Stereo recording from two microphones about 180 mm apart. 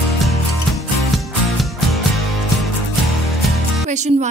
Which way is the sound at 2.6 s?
Centre (ahead or behind).